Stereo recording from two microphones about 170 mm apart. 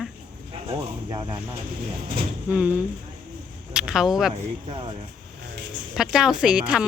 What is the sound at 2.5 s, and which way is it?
A woman's voice, 10° right (ahead or behind).